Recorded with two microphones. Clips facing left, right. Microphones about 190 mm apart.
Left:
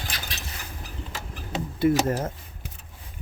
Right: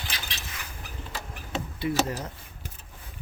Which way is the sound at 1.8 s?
45° left (ahead or behind).